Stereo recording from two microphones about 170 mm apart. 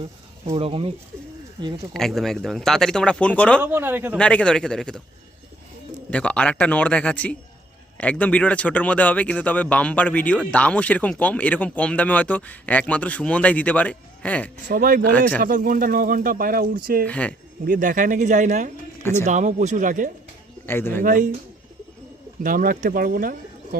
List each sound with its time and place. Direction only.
0.5 s speech: 35° right (ahead or behind)
1.9 s speech: centre (ahead or behind)
3.6 s a man's voice: 10° right (ahead or behind)
4.2 s speech: 5° left (ahead or behind)
6.1 s speech: 10° left (ahead or behind)
14.7 s speech: 55° right (ahead or behind)
17.1 s speech: 10° left (ahead or behind)
17.7 s speech: 50° right (ahead or behind)
20.7 s speech: 15° left (ahead or behind)
21.0 s speech: 55° right (ahead or behind)
22.4 s speech: 55° right (ahead or behind)